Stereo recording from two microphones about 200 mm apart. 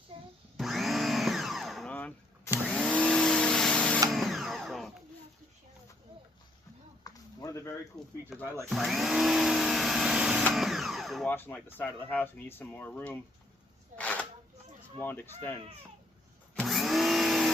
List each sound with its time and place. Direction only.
0.1 s blender: 30° right (ahead or behind)
0.5 s blender: centre (ahead or behind)
2.6 s vacuum cleaner: 5° left (ahead or behind)
4.1 s a sound: centre (ahead or behind)
7.0 s a sound: 15° left (ahead or behind)
7.9 s speech: centre (ahead or behind)
8.7 s vacuum cleaner: centre (ahead or behind)
14.0 s a sound: 5° left (ahead or behind)
15.0 s speech: 10° left (ahead or behind)
16.6 s vacuum cleaner: centre (ahead or behind)